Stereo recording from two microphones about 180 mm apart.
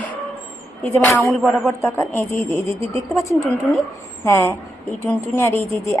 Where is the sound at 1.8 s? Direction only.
10° left (ahead or behind).